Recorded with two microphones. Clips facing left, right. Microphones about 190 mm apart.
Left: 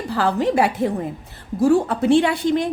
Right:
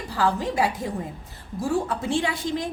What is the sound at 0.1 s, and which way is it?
A woman's voice, 70° left (ahead or behind).